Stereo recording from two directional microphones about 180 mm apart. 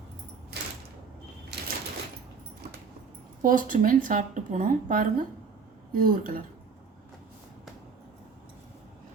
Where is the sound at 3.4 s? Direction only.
50° right (ahead or behind).